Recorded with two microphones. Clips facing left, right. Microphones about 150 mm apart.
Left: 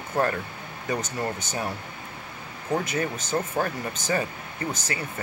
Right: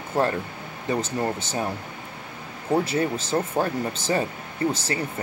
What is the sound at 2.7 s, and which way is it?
Speech, 30° right (ahead or behind).